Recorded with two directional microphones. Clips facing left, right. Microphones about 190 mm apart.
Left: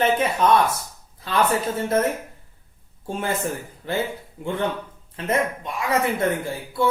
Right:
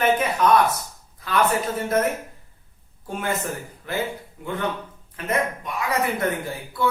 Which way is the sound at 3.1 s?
30° left (ahead or behind).